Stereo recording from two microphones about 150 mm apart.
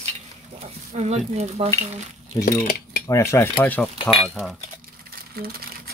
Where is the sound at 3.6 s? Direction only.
5° left (ahead or behind).